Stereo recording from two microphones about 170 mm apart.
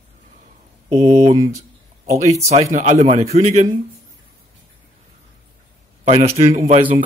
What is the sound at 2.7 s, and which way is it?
A man's voice, 45° right (ahead or behind).